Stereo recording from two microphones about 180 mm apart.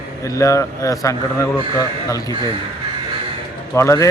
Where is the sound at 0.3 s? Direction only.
15° left (ahead or behind).